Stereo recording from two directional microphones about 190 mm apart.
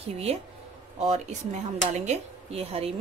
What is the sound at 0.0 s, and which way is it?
Speech, 30° right (ahead or behind).